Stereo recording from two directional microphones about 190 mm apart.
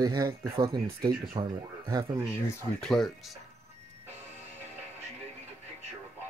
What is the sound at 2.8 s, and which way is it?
Speech, centre (ahead or behind).